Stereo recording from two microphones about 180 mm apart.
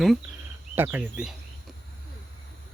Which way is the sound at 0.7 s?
10° right (ahead or behind).